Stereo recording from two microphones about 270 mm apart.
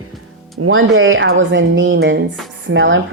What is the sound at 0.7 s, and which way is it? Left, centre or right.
Speech, right.